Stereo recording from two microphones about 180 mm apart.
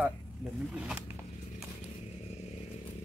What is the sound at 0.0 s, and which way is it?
Speech, 5° right (ahead or behind).